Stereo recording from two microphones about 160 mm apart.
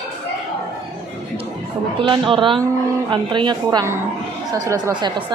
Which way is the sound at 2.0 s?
30° right (ahead or behind).